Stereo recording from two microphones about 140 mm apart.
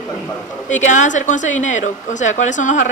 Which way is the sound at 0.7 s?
60° left (ahead or behind).